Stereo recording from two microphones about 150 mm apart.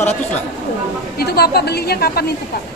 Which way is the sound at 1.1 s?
90° left.